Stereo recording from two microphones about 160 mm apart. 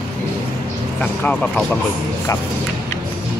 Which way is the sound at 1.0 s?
5° left (ahead or behind).